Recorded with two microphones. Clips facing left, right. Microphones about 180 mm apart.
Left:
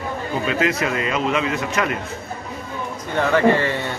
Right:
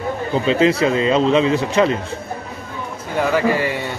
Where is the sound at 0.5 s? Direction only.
30° right (ahead or behind).